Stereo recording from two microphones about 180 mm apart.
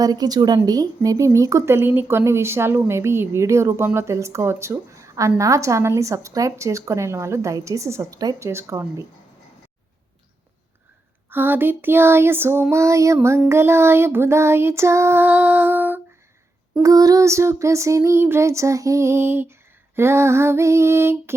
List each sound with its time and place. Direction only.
0.0 s speech: 20° right (ahead or behind)
11.3 s speech: 10° right (ahead or behind)